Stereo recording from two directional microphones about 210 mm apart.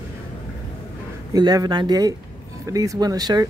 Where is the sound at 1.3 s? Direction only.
20° right (ahead or behind).